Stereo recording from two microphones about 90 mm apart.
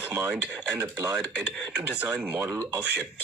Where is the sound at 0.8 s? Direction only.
35° right (ahead or behind).